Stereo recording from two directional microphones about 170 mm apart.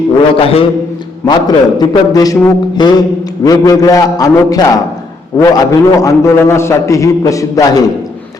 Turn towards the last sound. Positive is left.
turn(degrees=20)  # may be behind; listen again after turning